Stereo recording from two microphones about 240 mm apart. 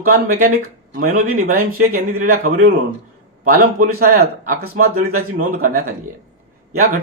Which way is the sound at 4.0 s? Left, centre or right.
Right.